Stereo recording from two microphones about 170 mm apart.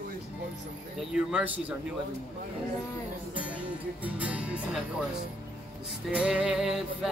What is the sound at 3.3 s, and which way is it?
Speech, 10° right (ahead or behind).